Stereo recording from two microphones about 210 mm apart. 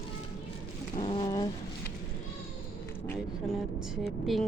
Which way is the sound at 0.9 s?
30° left (ahead or behind).